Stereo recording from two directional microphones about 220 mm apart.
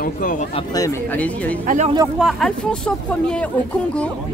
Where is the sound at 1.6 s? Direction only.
35° right (ahead or behind).